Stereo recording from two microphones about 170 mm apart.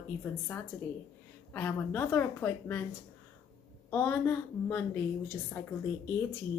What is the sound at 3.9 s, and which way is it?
A woman's voice, 10° left (ahead or behind).